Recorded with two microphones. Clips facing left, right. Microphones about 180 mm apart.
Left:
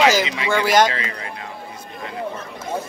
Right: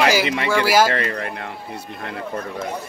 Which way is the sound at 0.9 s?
60° right (ahead or behind).